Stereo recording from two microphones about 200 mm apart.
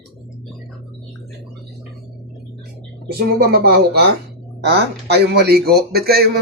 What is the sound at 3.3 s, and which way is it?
Speech, 50° right (ahead or behind).